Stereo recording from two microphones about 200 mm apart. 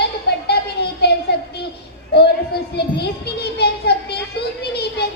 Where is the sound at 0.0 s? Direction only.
55° left (ahead or behind).